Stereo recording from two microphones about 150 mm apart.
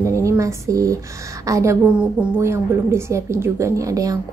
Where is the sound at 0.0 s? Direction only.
20° right (ahead or behind).